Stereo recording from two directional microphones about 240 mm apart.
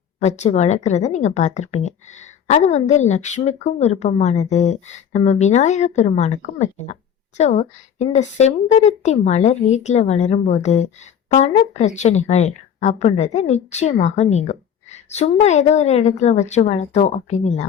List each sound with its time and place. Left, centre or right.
0.2 s speech: left